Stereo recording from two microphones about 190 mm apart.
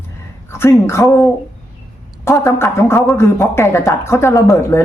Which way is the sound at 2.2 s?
15° left (ahead or behind).